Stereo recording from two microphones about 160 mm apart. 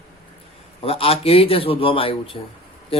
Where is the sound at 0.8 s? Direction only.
35° left (ahead or behind).